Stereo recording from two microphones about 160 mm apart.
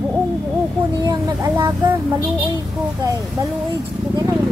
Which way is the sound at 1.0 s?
20° right (ahead or behind).